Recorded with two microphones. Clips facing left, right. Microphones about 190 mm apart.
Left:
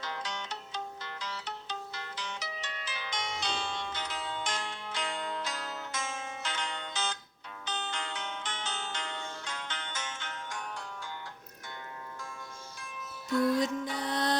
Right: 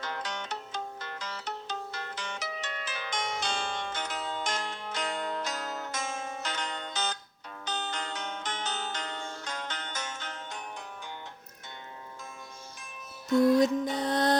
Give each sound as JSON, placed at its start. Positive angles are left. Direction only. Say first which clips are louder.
{"t": 0.0, "sound": "music", "louder": "right 2 dB", "side_deg": -50}
{"t": 13.8, "sound": "music", "louder": "right 5 dB", "side_deg": -20}
{"t": 14.1, "sound": "music", "louder": "right 5 dB", "side_deg": -50}